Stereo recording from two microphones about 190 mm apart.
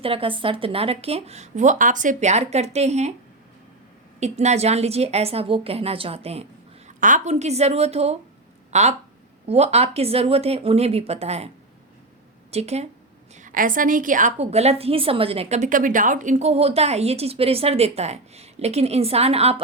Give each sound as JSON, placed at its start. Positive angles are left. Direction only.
{"t": 0.0, "sound": "a woman's voice", "side_deg": -30}
{"t": 4.2, "sound": "a woman's voice", "side_deg": -35}
{"t": 13.3, "sound": "a woman's voice", "side_deg": -45}